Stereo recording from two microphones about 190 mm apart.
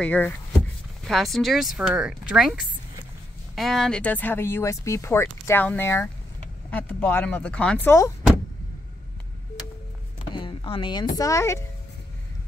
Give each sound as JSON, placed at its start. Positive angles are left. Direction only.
{"t": 0.0, "sound": "speech", "side_deg": 10}
{"t": 10.3, "sound": "a sound", "side_deg": 25}
{"t": 11.1, "sound": "speech", "side_deg": 15}